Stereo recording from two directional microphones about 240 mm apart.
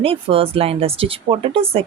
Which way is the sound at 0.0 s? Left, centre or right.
Right.